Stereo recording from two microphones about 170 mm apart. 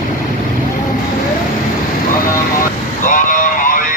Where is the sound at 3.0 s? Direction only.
50° left (ahead or behind).